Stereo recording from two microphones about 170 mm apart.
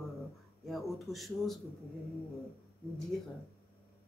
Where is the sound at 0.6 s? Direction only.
Centre (ahead or behind).